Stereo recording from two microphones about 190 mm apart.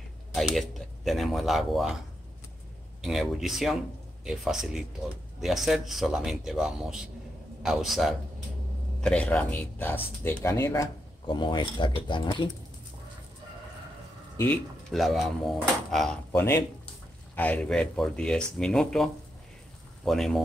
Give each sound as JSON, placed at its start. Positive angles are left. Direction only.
{"t": 0.3, "sound": "speech", "side_deg": 0}
{"t": 3.0, "sound": "speech", "side_deg": 0}
{"t": 14.3, "sound": "a sound", "side_deg": 10}
{"t": 14.9, "sound": "speech", "side_deg": 0}
{"t": 16.3, "sound": "speech", "side_deg": 15}
{"t": 20.1, "sound": "speech", "side_deg": 0}